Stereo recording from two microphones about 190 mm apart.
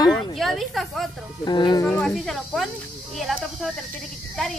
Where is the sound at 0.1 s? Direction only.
Centre (ahead or behind).